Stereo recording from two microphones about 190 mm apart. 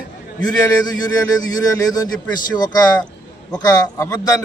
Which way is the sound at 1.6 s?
20° left (ahead or behind).